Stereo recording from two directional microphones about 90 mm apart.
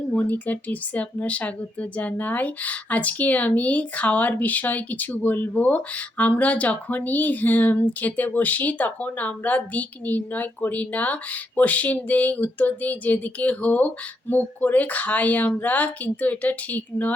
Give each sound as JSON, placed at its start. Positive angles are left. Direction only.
{"t": 0.2, "sound": "speech", "side_deg": 20}